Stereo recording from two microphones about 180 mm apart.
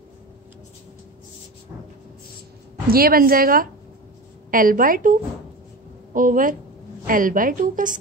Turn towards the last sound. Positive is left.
turn(degrees=-50)  # may be behind; listen again after turning